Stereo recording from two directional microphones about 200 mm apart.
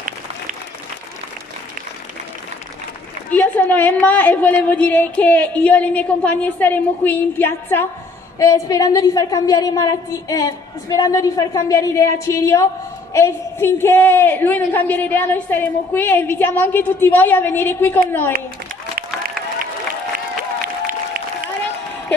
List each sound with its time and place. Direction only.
3.3 s a woman's voice: 10° left (ahead or behind)